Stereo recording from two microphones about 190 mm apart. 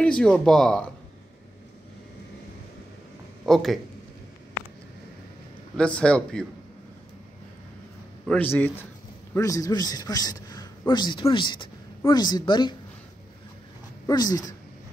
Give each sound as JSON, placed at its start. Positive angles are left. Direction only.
{"t": 0.0, "sound": "speech", "side_deg": 5}
{"t": 3.4, "sound": "speech", "side_deg": 0}
{"t": 5.8, "sound": "speech", "side_deg": 5}
{"t": 8.3, "sound": "a man's voice", "side_deg": 10}
{"t": 14.0, "sound": "a man's voice", "side_deg": 20}